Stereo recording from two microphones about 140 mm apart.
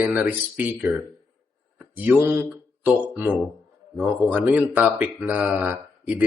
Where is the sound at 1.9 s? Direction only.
10° right (ahead or behind).